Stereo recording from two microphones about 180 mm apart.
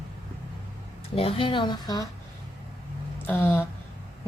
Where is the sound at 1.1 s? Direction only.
30° left (ahead or behind).